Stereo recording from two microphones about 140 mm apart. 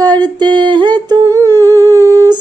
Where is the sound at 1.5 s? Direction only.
25° right (ahead or behind).